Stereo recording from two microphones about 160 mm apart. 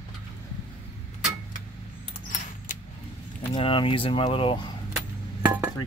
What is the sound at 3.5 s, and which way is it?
Speech, 30° left (ahead or behind).